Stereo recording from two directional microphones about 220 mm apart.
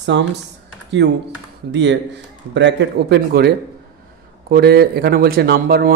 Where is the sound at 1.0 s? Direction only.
50° right (ahead or behind).